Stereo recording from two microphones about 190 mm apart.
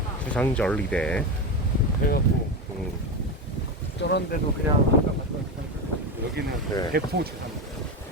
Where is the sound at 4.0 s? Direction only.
65° left (ahead or behind).